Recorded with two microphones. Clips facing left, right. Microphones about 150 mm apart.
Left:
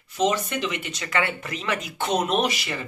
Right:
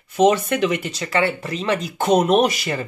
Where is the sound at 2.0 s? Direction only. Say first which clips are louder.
Right 8 dB; 45° right (ahead or behind).